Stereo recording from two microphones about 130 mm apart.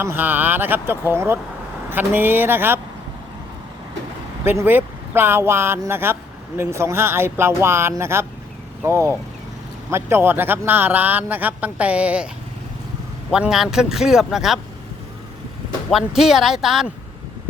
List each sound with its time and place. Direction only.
0.0 s a man's voice: 15° right (ahead or behind)
4.4 s a man's voice: 15° right (ahead or behind)
13.3 s speech: 5° right (ahead or behind)
15.9 s speech: centre (ahead or behind)